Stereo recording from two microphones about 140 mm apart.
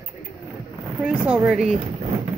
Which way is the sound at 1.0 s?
10° right (ahead or behind).